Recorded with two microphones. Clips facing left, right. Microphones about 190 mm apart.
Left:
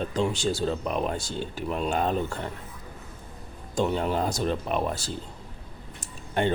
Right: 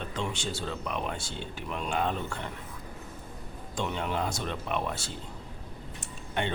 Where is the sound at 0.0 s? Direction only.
35° left (ahead or behind).